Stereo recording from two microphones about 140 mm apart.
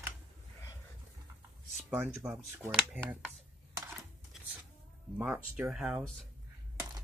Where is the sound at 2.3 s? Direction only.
15° right (ahead or behind).